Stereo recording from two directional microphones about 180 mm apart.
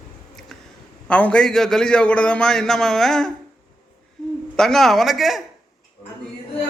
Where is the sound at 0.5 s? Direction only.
Centre (ahead or behind).